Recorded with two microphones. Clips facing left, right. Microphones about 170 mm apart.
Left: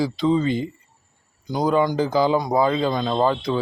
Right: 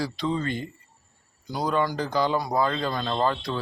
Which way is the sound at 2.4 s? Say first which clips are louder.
Left 5 dB; 20° left (ahead or behind).